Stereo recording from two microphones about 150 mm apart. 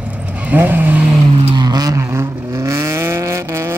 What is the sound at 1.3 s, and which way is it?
Vehicle, 35° right (ahead or behind).